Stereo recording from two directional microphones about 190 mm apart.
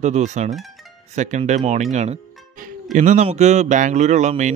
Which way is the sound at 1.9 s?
35° right (ahead or behind).